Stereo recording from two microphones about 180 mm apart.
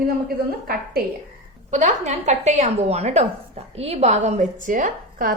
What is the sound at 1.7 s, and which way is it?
A woman's voice, 40° right (ahead or behind).